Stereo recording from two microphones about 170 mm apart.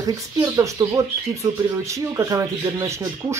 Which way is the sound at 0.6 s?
20° right (ahead or behind).